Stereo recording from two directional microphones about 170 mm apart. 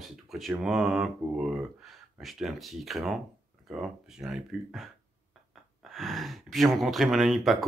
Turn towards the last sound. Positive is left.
turn(degrees=0)  # may be behind; listen again after turning